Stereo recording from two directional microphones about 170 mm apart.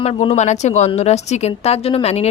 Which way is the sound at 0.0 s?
35° left (ahead or behind).